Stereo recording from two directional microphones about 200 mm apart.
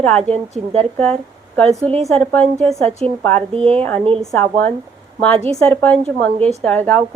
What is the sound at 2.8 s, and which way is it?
A woman's voice, 30° right (ahead or behind).